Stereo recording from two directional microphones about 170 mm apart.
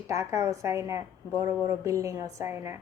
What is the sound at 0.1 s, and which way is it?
A woman's voice, 15° right (ahead or behind).